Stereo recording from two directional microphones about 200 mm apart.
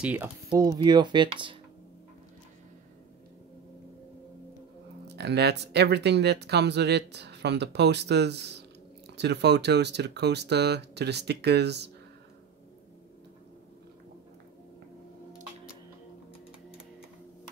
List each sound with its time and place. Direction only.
0.0 s speech: 10° right (ahead or behind)
0.5 s speech: 20° right (ahead or behind)
5.0 s speech: 55° right (ahead or behind)